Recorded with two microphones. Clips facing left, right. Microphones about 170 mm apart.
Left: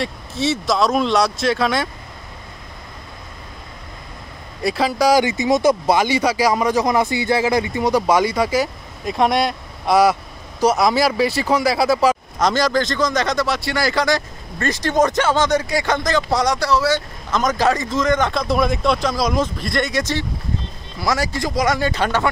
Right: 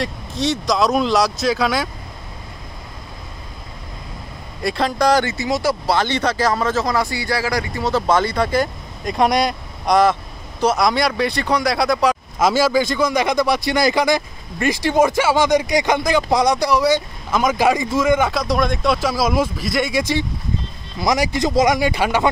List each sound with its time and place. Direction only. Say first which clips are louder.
0.0 s speech: even; 5° left (ahead or behind)
4.6 s a man's voice: left 1 dB; 5° left (ahead or behind); by 22.3 s 10° right (ahead or behind)